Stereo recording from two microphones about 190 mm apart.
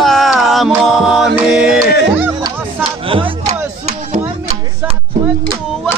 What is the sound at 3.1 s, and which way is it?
Music, 30° right (ahead or behind).